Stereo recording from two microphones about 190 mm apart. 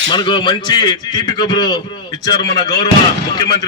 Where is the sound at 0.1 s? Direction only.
25° left (ahead or behind).